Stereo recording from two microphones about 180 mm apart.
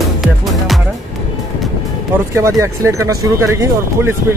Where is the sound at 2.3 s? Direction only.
15° right (ahead or behind).